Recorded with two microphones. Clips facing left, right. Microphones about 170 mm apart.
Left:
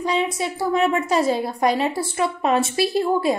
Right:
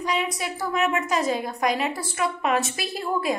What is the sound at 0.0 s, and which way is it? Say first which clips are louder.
A woman's voice: left 4 dB; 30° left (ahead or behind).